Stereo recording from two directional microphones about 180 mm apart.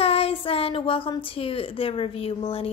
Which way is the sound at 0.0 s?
35° left (ahead or behind).